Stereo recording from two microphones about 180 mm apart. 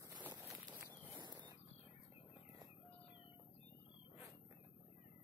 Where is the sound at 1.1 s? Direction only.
25° right (ahead or behind).